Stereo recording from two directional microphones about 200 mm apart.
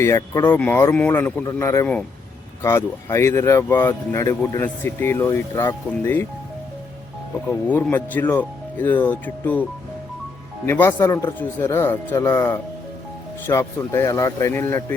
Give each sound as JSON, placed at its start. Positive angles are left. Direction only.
{"t": 0.0, "sound": "speech", "side_deg": 15}
{"t": 7.7, "sound": "speech", "side_deg": 10}
{"t": 10.7, "sound": "speech", "side_deg": 15}